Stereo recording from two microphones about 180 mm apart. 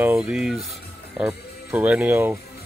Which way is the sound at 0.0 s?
5° right (ahead or behind).